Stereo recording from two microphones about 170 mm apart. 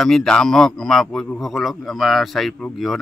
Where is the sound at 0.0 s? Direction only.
5° left (ahead or behind).